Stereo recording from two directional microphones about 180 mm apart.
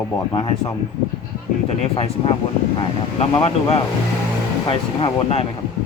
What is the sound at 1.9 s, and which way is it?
Speech, 30° left (ahead or behind).